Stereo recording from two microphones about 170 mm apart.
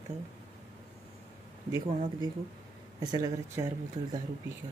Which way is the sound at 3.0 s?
25° right (ahead or behind).